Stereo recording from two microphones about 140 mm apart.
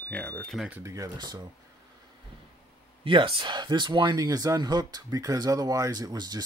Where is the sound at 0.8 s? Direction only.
25° right (ahead or behind).